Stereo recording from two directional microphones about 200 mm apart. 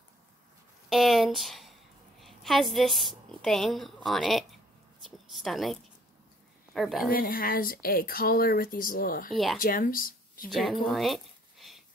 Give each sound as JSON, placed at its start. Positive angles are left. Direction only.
{"t": 0.8, "sound": "a woman's voice", "side_deg": 0}
{"t": 7.1, "sound": "speech", "side_deg": 45}
{"t": 9.3, "sound": "speech", "side_deg": 0}
{"t": 9.6, "sound": "speech", "side_deg": 45}
{"t": 10.5, "sound": "speech", "side_deg": 0}
{"t": 10.9, "sound": "a sound", "side_deg": 0}